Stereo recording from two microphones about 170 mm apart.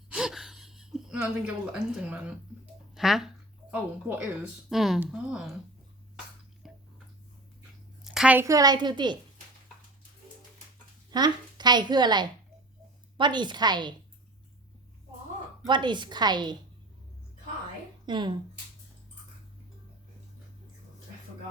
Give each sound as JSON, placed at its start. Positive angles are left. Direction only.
{"t": 0.1, "sound": "gasp", "side_deg": -5}
{"t": 1.2, "sound": "speech", "side_deg": -5}
{"t": 2.9, "sound": "a sound", "side_deg": 0}
{"t": 4.4, "sound": "speech", "side_deg": 0}
{"t": 6.6, "sound": "tick-tock", "side_deg": 0}
{"t": 8.1, "sound": "a woman's voice", "side_deg": -5}
{"t": 11.1, "sound": "a woman's voice", "side_deg": -25}
{"t": 15.6, "sound": "a woman's voice", "side_deg": -25}
{"t": 18.0, "sound": "speech", "side_deg": -25}